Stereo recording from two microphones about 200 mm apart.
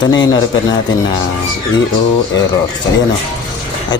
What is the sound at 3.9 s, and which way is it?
Speech, 20° left (ahead or behind).